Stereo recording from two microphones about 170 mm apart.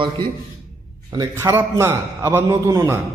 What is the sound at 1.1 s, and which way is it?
A man's voice, 20° right (ahead or behind).